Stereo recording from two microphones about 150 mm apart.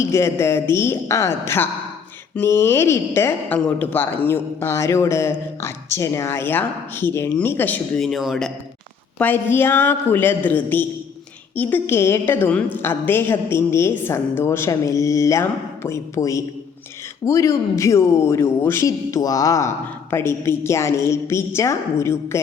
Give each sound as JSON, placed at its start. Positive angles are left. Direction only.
{"t": 0.0, "sound": "speech", "side_deg": 20}
{"t": 8.0, "sound": "a man's voice", "side_deg": 0}
{"t": 9.1, "sound": "a man's voice", "side_deg": 15}